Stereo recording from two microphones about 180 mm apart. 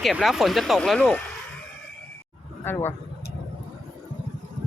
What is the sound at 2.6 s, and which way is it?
Speech, 10° left (ahead or behind).